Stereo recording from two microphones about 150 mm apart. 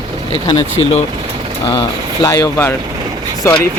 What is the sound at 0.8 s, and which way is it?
Speech, 30° left (ahead or behind).